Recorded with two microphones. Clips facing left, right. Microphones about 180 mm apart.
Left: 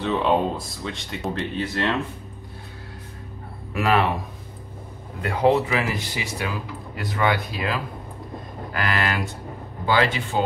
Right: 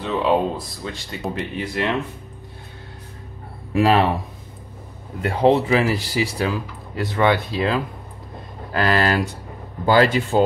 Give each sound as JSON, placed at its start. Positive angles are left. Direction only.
{"t": 0.0, "sound": "speech", "side_deg": 0}
{"t": 1.3, "sound": "speech", "side_deg": -10}
{"t": 3.7, "sound": "speech", "side_deg": -30}
{"t": 5.2, "sound": "speech", "side_deg": -30}
{"t": 8.7, "sound": "a sound", "side_deg": -30}
{"t": 9.8, "sound": "speech", "side_deg": -40}